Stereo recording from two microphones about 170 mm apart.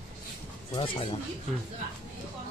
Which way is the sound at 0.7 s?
30° left (ahead or behind).